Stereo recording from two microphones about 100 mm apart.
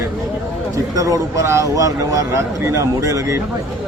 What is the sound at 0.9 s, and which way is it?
A man's voice, 35° right (ahead or behind).